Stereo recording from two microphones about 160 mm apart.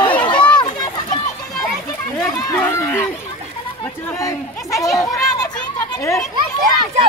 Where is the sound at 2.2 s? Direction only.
20° left (ahead or behind).